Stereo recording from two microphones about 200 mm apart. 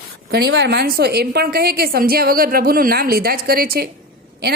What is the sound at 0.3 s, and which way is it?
A woman's voice, 55° right (ahead or behind).